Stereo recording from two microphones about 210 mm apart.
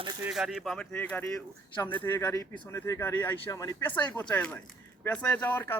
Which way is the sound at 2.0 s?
20° left (ahead or behind).